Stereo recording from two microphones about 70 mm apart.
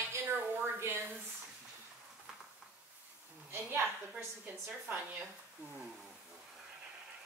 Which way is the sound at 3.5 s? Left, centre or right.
Right.